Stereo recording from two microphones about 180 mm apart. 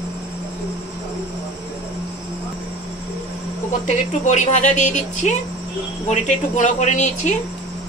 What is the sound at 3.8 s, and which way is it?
Speech, 40° left (ahead or behind).